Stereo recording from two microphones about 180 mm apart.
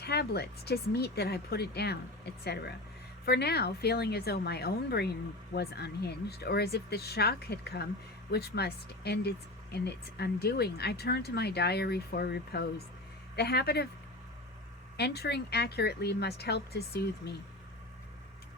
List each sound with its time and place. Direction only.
0.0 s speech: 65° left (ahead or behind)
14.9 s speech: 65° left (ahead or behind)